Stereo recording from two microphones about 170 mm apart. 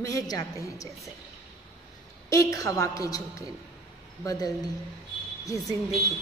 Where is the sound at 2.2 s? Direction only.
20° left (ahead or behind).